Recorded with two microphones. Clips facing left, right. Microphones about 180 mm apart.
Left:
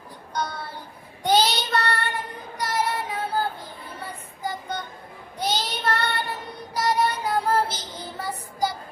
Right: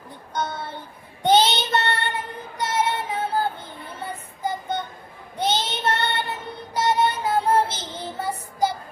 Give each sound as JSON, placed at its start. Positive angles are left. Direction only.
{"t": 0.3, "sound": "child singing", "side_deg": -25}